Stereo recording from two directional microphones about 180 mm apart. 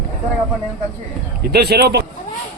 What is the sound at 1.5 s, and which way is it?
Speech, 60° right (ahead or behind).